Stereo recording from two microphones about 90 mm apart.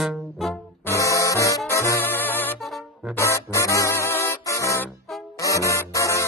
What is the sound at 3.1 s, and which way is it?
Music, 35° left (ahead or behind).